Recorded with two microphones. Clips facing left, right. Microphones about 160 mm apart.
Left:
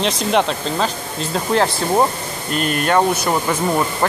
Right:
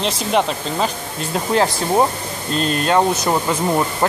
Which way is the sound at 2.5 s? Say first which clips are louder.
Even; 30° right (ahead or behind).